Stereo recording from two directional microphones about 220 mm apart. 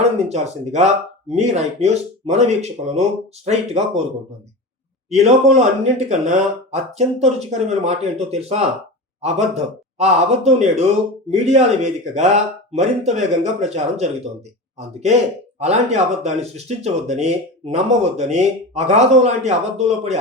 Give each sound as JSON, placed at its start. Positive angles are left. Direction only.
{"t": 0.3, "sound": "speech", "side_deg": -30}
{"t": 5.0, "sound": "speech", "side_deg": -30}